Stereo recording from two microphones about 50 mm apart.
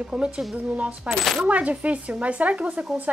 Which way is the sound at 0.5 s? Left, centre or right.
Right.